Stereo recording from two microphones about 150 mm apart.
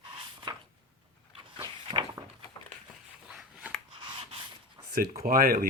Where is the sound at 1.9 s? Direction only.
30° right (ahead or behind).